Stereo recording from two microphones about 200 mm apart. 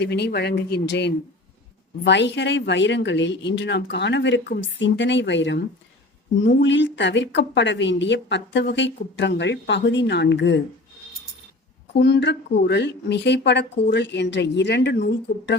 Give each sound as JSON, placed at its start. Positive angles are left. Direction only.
{"t": 0.0, "sound": "speech", "side_deg": 55}
{"t": 11.9, "sound": "speech", "side_deg": 60}